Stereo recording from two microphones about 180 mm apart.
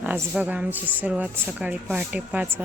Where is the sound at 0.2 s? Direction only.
5° right (ahead or behind).